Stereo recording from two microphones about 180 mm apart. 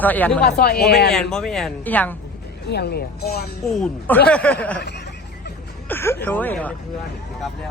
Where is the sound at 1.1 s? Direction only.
5° left (ahead or behind).